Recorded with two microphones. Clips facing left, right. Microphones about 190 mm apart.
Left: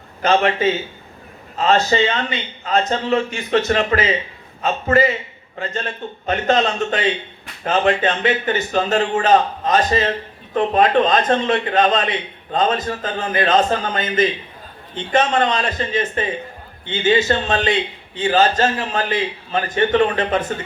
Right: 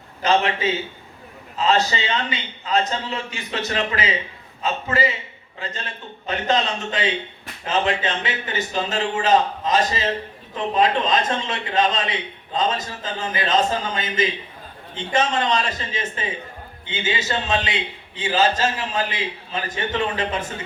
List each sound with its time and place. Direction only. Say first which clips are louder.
0.2 s a man's voice: left 4 dB; 50° left (ahead or behind)